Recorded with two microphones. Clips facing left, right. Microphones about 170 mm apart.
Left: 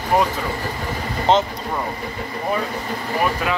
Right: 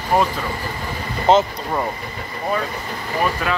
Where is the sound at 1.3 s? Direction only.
5° right (ahead or behind).